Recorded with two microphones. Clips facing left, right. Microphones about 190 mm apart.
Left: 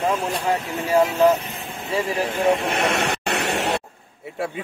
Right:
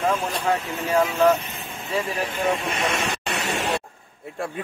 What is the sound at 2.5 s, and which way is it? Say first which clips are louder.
Speech: left 4 dB; 65° left (ahead or behind).